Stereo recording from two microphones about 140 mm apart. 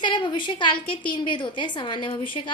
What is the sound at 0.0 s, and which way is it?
A woman's voice, 35° left (ahead or behind).